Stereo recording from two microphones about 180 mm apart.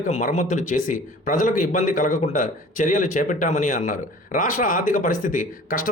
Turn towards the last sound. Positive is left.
turn(degrees=45)  # may be behind; listen again after turning